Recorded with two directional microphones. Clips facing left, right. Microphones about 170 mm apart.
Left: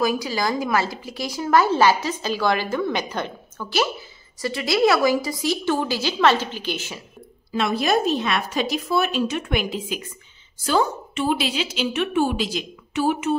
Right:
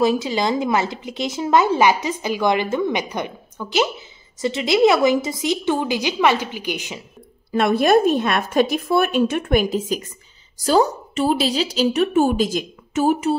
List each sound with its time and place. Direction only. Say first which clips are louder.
0.0 s speech: right 4 dB; 25° right (ahead or behind)
7.5 s a woman's voice: right 6 dB; 55° right (ahead or behind); by 13.4 s 40° right (ahead or behind)